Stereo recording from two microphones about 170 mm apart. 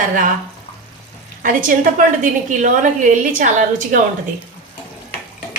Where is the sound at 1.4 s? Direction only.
50° right (ahead or behind).